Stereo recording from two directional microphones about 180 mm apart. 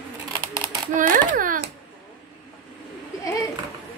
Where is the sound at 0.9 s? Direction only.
45° right (ahead or behind).